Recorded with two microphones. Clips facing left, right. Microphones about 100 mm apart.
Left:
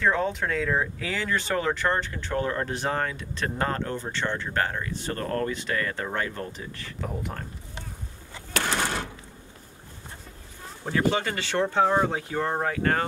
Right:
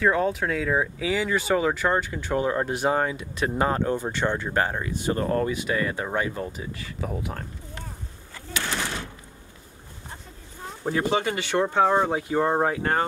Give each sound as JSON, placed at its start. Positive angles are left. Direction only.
{"t": 0.0, "sound": "speech", "side_deg": -5}
{"t": 8.8, "sound": "a sound", "side_deg": 55}
{"t": 10.8, "sound": "speech", "side_deg": -20}